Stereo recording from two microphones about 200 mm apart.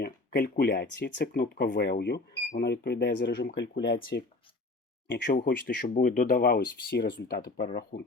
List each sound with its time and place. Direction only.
0.0 s speech: 50° left (ahead or behind)